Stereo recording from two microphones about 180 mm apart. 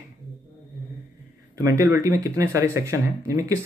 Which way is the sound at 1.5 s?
20° right (ahead or behind).